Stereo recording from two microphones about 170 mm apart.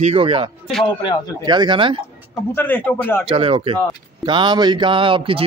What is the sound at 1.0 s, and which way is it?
Speech, 25° left (ahead or behind).